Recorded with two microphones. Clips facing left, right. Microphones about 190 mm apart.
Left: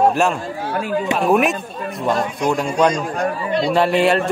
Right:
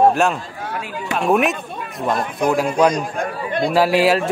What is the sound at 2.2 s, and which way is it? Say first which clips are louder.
A man's voice: right 1 dB; 55° right (ahead or behind).